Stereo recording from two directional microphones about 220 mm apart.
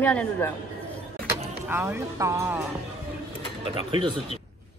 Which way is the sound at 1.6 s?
10° right (ahead or behind).